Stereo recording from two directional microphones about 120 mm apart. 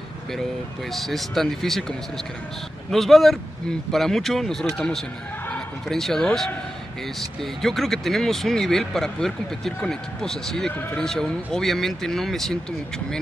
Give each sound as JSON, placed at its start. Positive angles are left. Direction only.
{"t": 0.9, "sound": "speech", "side_deg": 0}
{"t": 10.7, "sound": "speech", "side_deg": 15}
{"t": 11.0, "sound": "speech", "side_deg": 5}